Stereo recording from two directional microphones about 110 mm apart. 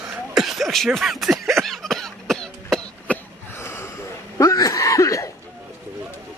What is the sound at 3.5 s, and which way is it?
Gasp, 25° left (ahead or behind).